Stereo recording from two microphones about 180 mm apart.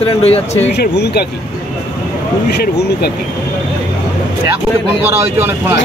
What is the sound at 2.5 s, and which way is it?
Speech, 65° left (ahead or behind).